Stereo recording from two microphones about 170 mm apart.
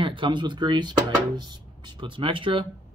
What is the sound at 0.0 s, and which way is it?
Speech, 30° right (ahead or behind).